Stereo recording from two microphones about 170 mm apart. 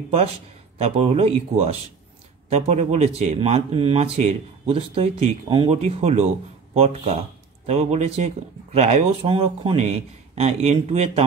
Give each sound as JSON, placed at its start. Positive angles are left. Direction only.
{"t": 0.7, "sound": "speech", "side_deg": -35}